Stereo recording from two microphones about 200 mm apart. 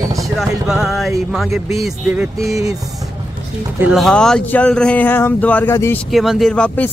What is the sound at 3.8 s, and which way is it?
Speech, centre (ahead or behind).